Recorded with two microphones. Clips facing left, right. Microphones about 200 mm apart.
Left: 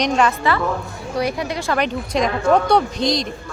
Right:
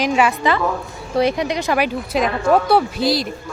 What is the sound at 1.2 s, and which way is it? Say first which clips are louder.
Speech: right 5 dB; 20° right (ahead or behind).